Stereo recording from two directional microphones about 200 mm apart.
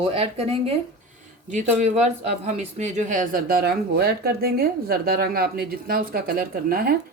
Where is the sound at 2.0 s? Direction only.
35° right (ahead or behind).